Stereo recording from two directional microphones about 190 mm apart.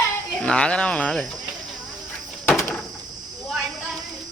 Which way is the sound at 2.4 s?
10° left (ahead or behind).